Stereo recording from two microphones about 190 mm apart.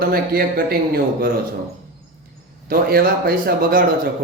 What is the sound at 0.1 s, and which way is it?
A man's voice, 50° right (ahead or behind).